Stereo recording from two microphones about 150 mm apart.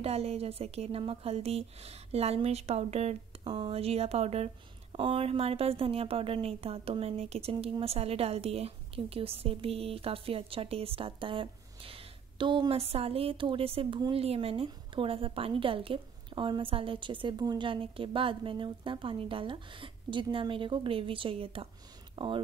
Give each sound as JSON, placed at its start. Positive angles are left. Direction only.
{"t": 0.0, "sound": "a woman's voice", "side_deg": -45}